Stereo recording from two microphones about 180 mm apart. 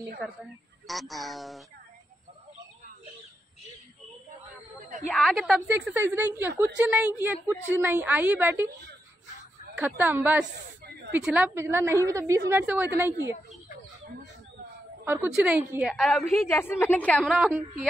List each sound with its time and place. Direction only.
0.2 s a woman's voice: centre (ahead or behind)
5.1 s a woman's voice: centre (ahead or behind)
5.9 s a woman's voice: 10° right (ahead or behind)
9.8 s a woman's voice: 10° right (ahead or behind)
15.0 s a woman's voice: 10° right (ahead or behind)
16.4 s a woman's voice: 15° left (ahead or behind)
17.4 s a woman's voice: 10° right (ahead or behind)